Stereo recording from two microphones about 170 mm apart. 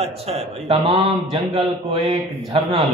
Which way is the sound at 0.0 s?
35° right (ahead or behind).